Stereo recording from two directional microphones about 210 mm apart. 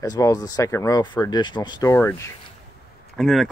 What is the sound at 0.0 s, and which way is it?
Speech, 15° left (ahead or behind).